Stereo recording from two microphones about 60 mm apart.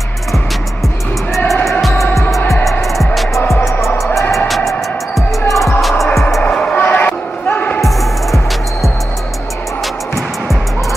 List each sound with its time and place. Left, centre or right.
1.5 s music: centre
6.5 s music: centre
6.8 s basketball bounce: left
7.8 s music: centre